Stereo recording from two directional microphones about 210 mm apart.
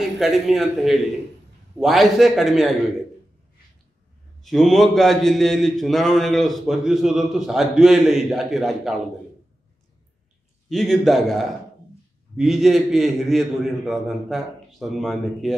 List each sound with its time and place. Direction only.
0.2 s a man's voice: centre (ahead or behind)
4.4 s a man's voice: centre (ahead or behind)
10.7 s a man's voice: centre (ahead or behind)